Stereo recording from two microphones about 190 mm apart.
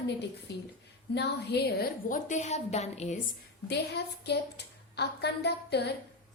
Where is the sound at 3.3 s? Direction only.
60° left (ahead or behind).